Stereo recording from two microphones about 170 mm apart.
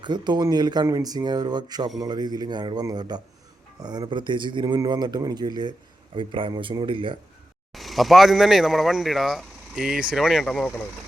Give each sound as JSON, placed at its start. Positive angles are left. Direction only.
{"t": 0.0, "sound": "speech", "side_deg": -25}
{"t": 7.7, "sound": "speech", "side_deg": 0}